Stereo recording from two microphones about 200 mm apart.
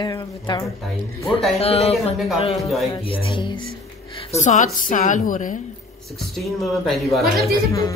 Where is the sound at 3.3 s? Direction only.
25° left (ahead or behind).